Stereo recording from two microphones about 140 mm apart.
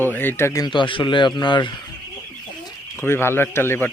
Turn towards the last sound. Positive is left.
turn(degrees=15)  # may be behind; listen again after turning